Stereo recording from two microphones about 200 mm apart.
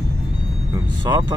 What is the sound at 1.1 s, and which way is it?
Speech, 20° right (ahead or behind).